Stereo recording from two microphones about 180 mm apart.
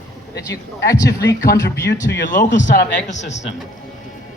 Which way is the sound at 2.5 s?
75° left (ahead or behind).